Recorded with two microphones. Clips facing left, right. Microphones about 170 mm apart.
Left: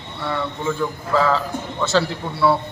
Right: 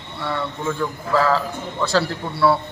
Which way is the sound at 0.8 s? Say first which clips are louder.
Even; centre (ahead or behind).